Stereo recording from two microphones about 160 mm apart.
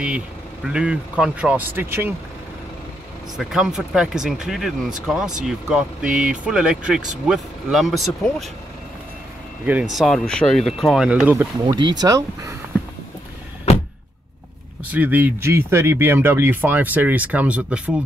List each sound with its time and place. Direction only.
0.7 s speech: 5° right (ahead or behind)
3.3 s speech: 5° right (ahead or behind)
9.9 s speech: centre (ahead or behind)
11.6 s speech: 30° right (ahead or behind)
13.7 s vehicle: 40° left (ahead or behind)
14.9 s speech: 10° right (ahead or behind)